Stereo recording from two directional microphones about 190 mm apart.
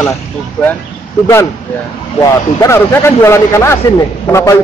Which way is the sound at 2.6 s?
15° left (ahead or behind).